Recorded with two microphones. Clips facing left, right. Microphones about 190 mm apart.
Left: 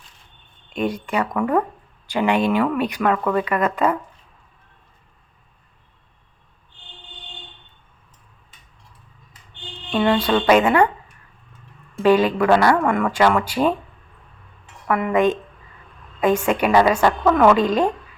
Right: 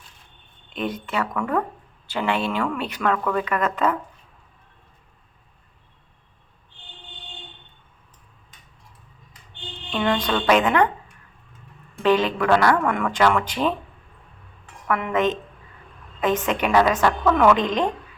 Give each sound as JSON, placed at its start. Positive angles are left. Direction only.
{"t": 0.7, "sound": "speech", "side_deg": 10}
{"t": 9.9, "sound": "speech", "side_deg": 5}
{"t": 12.0, "sound": "speech", "side_deg": 10}
{"t": 14.8, "sound": "speech", "side_deg": 10}